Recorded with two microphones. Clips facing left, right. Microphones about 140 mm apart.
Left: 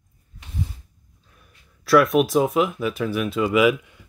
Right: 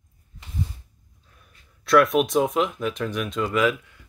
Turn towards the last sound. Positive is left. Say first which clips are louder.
# left 4 dB
turn(degrees=15)  # may be behind; listen again after turning